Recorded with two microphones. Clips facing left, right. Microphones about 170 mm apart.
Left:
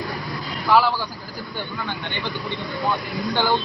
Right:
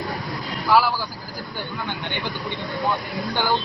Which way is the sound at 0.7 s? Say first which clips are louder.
Left 1 dB; centre (ahead or behind).